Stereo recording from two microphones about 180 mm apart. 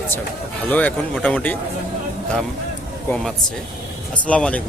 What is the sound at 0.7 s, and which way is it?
Speech, 10° left (ahead or behind).